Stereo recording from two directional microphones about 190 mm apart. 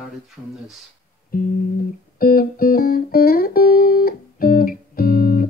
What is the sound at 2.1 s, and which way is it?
Music, 50° left (ahead or behind).